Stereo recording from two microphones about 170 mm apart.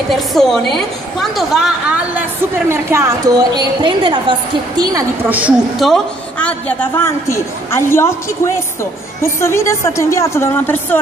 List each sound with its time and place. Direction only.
0.1 s speech: centre (ahead or behind)
2.7 s a woman's voice: 15° right (ahead or behind)
5.3 s a woman's voice: 5° right (ahead or behind); by 8.1 s 15° left (ahead or behind)
9.2 s a woman's voice: 15° left (ahead or behind)